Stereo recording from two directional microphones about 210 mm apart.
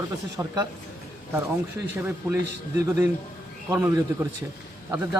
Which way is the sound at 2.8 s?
10° right (ahead or behind).